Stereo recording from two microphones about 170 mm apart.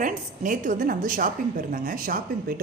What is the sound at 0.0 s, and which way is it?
A woman's voice, 50° right (ahead or behind).